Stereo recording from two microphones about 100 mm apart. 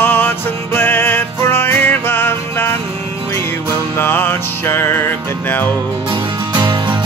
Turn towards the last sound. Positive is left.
turn(degrees=-50)  # may be behind; listen again after turning